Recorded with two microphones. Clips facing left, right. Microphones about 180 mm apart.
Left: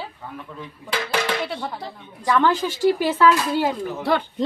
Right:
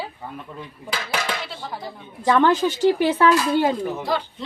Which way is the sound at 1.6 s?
60° left (ahead or behind).